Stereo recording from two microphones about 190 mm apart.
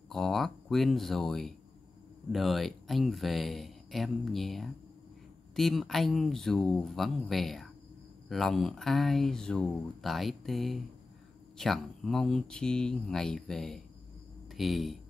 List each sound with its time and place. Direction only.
0.1 s speech: centre (ahead or behind)